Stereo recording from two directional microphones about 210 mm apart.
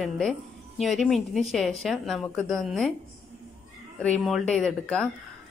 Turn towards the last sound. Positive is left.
turn(degrees=5)  # may be behind; listen again after turning